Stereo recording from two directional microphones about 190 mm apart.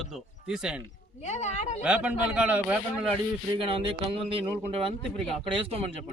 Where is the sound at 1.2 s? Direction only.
35° left (ahead or behind).